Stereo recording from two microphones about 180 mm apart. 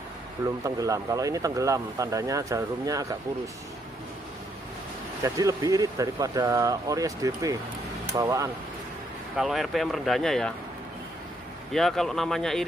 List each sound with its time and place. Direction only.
0.7 s speech: 20° right (ahead or behind)
5.2 s speech: 20° right (ahead or behind)
9.4 s speech: centre (ahead or behind)
11.7 s speech: centre (ahead or behind)